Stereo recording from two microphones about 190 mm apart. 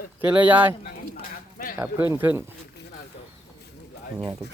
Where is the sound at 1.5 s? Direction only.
50° left (ahead or behind).